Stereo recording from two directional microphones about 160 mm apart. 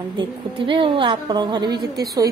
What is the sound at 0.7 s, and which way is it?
A woman's voice, 30° right (ahead or behind).